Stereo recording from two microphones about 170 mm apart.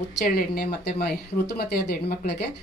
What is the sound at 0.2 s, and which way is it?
Speech, 60° left (ahead or behind).